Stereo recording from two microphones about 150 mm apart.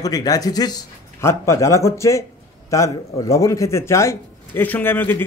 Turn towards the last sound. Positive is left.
turn(degrees=15)  # may be behind; listen again after turning